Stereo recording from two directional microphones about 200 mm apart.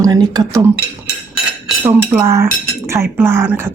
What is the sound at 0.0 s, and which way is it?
Speech, 20° right (ahead or behind).